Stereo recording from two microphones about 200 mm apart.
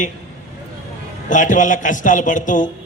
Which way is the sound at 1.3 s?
40° left (ahead or behind).